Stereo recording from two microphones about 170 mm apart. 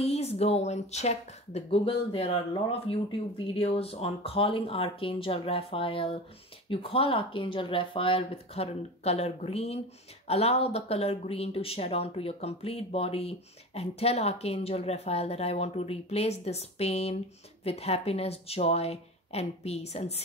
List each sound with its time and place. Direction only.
0.0 s speech: 40° left (ahead or behind)